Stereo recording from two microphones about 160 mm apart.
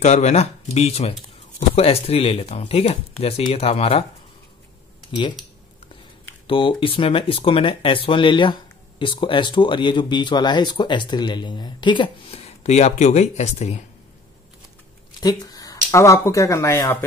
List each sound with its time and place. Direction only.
0.0 s speech: 45° left (ahead or behind)
6.4 s speech: 35° left (ahead or behind)
12.4 s speech: 45° left (ahead or behind)
15.1 s speech: 25° left (ahead or behind)